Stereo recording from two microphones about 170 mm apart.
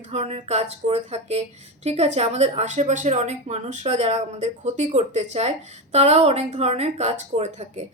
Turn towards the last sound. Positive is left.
turn(degrees=-40)  # may be behind; listen again after turning